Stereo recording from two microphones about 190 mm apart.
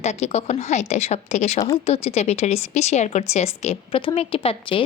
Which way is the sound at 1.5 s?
20° left (ahead or behind).